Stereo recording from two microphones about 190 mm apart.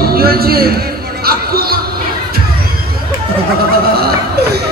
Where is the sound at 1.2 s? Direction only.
55° right (ahead or behind).